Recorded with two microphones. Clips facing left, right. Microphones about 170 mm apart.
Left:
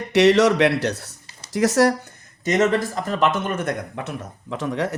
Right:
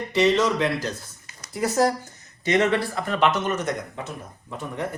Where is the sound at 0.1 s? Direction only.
70° left (ahead or behind).